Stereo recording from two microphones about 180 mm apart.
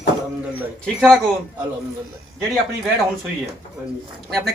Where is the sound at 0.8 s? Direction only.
Centre (ahead or behind).